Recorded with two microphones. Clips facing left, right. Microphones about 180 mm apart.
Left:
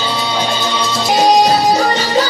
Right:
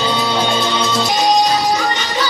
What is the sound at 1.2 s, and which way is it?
Music, 35° left (ahead or behind).